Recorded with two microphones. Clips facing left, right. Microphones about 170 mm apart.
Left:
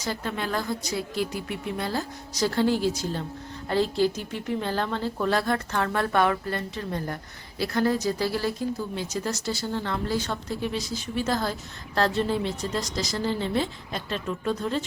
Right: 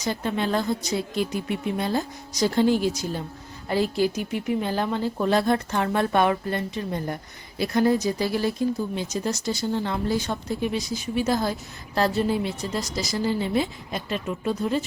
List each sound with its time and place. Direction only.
0.0 s a woman's voice: 20° right (ahead or behind)